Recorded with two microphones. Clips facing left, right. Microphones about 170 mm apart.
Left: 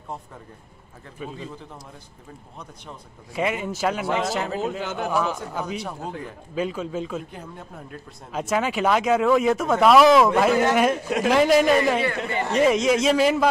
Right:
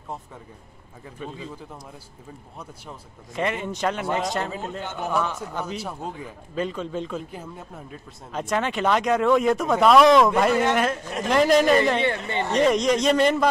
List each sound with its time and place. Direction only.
1.2 s a man's voice: 5° left (ahead or behind)
3.3 s a man's voice: 5° left (ahead or behind)
4.6 s speech: 90° left
5.1 s a man's voice: 10° left (ahead or behind)